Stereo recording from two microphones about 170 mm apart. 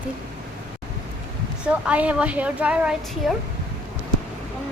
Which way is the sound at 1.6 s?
5° right (ahead or behind).